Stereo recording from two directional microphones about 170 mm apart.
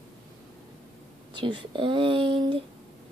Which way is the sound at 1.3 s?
30° right (ahead or behind).